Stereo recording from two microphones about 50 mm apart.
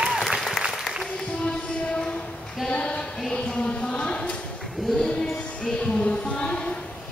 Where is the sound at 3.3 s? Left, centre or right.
Centre.